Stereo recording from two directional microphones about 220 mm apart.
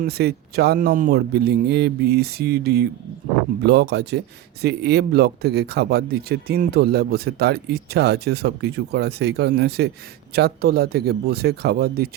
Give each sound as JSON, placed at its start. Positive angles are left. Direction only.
{"t": 0.0, "sound": "speech", "side_deg": -45}